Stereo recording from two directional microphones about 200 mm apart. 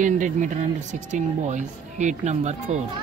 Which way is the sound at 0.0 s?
40° right (ahead or behind).